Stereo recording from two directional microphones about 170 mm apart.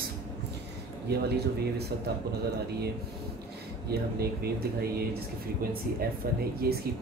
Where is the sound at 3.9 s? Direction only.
65° right (ahead or behind).